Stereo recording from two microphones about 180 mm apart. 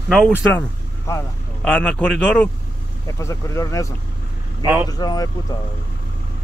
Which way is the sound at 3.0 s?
15° left (ahead or behind).